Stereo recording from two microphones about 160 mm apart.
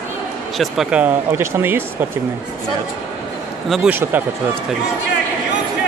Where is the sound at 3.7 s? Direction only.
5° right (ahead or behind).